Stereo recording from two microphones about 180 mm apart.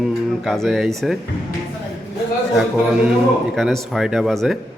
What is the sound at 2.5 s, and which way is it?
Speech, centre (ahead or behind).